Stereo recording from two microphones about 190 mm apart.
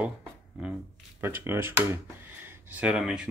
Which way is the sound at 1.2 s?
10° right (ahead or behind).